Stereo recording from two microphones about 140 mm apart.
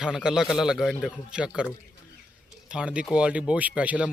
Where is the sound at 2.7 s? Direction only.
5° right (ahead or behind).